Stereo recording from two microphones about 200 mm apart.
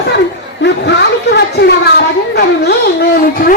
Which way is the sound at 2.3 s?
55° left (ahead or behind).